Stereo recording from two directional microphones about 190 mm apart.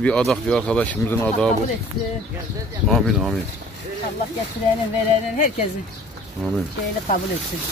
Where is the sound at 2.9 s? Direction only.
Centre (ahead or behind).